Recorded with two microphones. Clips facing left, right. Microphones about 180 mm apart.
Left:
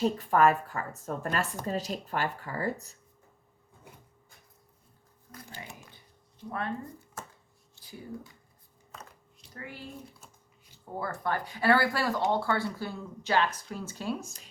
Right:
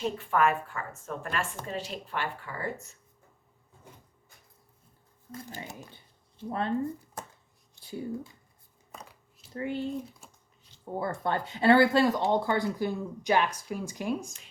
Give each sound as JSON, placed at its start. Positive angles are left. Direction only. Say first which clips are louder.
{"t": 0.0, "sound": "speech", "louder": "left 3 dB", "side_deg": 35}
{"t": 6.5, "sound": "speech", "louder": "right 4 dB", "side_deg": -30}
{"t": 7.8, "sound": "speech", "louder": "right 7 dB", "side_deg": -25}
{"t": 8.9, "sound": "a sound", "louder": "right 1 dB", "side_deg": -10}
{"t": 9.6, "sound": "speech", "louder": "right 11 dB", "side_deg": -25}
{"t": 11.0, "sound": "speech", "louder": "right 2 dB", "side_deg": -25}